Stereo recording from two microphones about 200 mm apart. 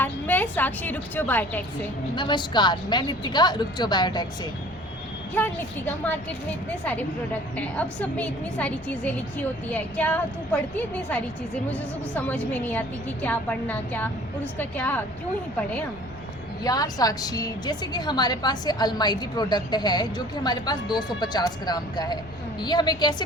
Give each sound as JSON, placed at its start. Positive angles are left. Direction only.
{"t": 0.0, "sound": "a woman's voice", "side_deg": 10}
{"t": 2.1, "sound": "a woman's voice", "side_deg": 20}
{"t": 5.3, "sound": "a woman's voice", "side_deg": 10}
{"t": 16.6, "sound": "a woman's voice", "side_deg": 20}